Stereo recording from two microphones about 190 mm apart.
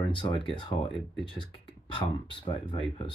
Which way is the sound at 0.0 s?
25° left (ahead or behind).